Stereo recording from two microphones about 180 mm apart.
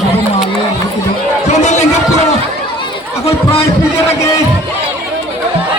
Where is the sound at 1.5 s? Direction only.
40° left (ahead or behind).